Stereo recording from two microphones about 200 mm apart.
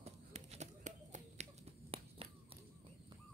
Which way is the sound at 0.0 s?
35° right (ahead or behind).